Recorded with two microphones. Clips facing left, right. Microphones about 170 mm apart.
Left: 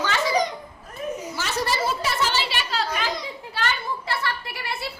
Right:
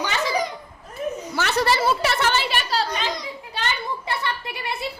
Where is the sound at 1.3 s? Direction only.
65° right (ahead or behind); by 2.8 s 45° right (ahead or behind).